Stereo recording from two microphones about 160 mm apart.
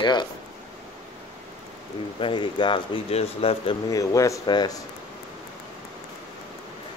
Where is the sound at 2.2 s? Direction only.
30° left (ahead or behind).